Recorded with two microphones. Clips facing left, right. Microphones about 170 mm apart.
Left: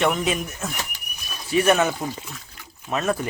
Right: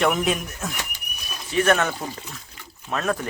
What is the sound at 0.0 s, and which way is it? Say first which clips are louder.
Speech: even; centre (ahead or behind).